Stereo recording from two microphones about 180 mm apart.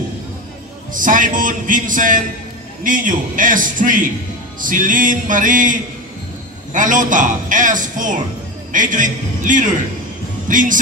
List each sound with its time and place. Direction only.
0.9 s a man's voice: 50° right (ahead or behind)